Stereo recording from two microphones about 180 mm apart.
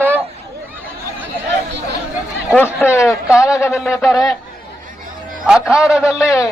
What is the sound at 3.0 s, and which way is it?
Speech, centre (ahead or behind).